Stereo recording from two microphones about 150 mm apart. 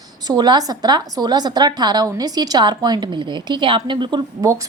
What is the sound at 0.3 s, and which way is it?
A woman's voice, 25° right (ahead or behind).